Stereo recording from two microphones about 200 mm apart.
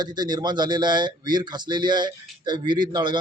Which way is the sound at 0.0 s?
20° right (ahead or behind).